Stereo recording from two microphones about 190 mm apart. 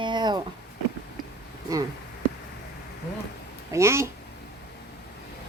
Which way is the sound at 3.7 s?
15° right (ahead or behind).